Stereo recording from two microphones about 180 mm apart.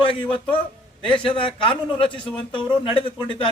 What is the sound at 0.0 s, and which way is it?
A man's voice, 30° left (ahead or behind).